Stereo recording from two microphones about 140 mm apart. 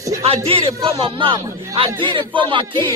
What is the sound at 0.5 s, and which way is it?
Speech, 40° right (ahead or behind).